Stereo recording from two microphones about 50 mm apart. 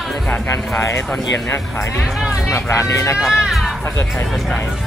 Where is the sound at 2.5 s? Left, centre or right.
Left.